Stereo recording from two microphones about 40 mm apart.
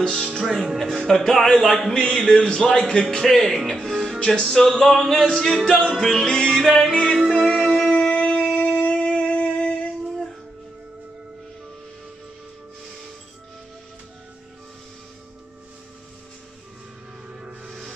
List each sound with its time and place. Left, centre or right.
0.1 s music: centre
2.1 s speech: left
2.6 s music: centre
3.2 s speech: centre
3.7 s music: centre
6.6 s speech: centre
6.9 s speech: left
7.2 s music: centre
7.4 s music: centre
8.5 s a sound: left
17.6 s music: centre